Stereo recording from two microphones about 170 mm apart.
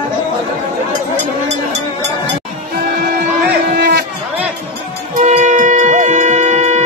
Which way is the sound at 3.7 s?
75° right (ahead or behind).